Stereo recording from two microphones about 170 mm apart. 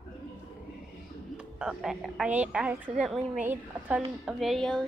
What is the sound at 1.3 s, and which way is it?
A woman's voice, 5° right (ahead or behind).